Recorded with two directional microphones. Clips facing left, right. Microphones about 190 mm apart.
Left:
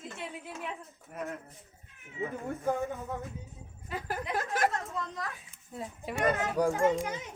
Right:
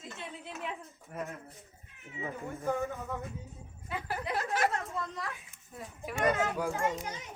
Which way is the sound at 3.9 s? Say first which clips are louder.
Left 1 dB; 40° left (ahead or behind).